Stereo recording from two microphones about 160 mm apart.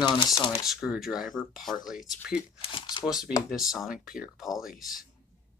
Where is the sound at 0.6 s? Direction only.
5° right (ahead or behind).